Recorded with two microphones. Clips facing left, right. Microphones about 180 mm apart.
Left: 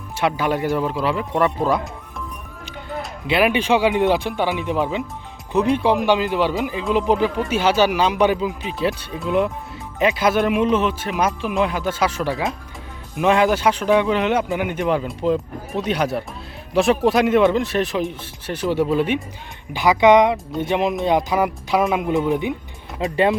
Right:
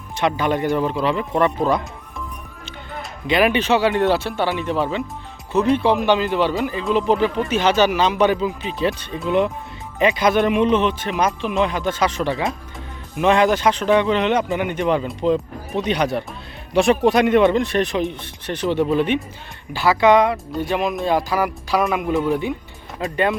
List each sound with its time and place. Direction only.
0.2 s speech: 5° left (ahead or behind)
3.0 s speech: 5° left (ahead or behind); by 23.4 s 25° left (ahead or behind)